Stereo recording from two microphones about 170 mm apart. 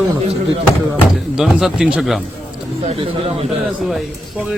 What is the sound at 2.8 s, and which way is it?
Speech, 35° right (ahead or behind).